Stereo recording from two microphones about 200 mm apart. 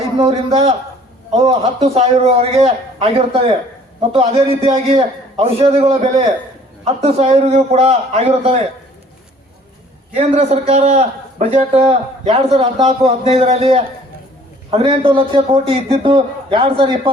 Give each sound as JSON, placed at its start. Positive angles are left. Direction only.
{"t": 0.2, "sound": "a man's voice", "side_deg": -30}
{"t": 10.2, "sound": "a man's voice", "side_deg": -35}